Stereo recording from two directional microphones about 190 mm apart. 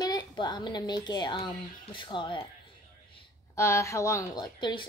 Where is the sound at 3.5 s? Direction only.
15° left (ahead or behind).